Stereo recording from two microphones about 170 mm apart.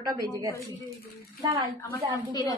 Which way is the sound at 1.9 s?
20° left (ahead or behind).